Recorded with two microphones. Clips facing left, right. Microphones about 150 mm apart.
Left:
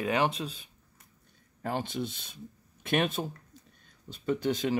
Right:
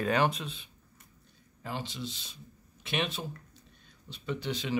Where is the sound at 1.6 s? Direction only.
55° left (ahead or behind).